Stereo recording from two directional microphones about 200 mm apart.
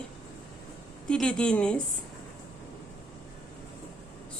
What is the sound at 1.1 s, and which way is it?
Speech, 5° left (ahead or behind).